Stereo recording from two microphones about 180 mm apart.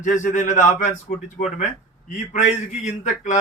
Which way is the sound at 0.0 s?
45° left (ahead or behind).